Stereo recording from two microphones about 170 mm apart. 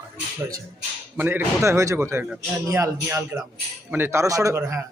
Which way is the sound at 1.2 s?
15° right (ahead or behind).